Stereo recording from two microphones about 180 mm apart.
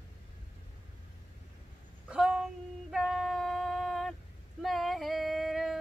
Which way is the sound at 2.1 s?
5° right (ahead or behind).